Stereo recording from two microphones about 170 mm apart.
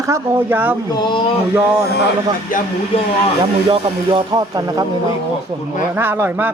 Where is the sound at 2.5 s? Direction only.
55° left (ahead or behind).